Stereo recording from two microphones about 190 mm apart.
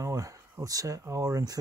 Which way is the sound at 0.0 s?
15° right (ahead or behind).